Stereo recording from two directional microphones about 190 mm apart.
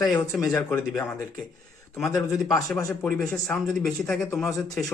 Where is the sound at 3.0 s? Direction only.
5° left (ahead or behind).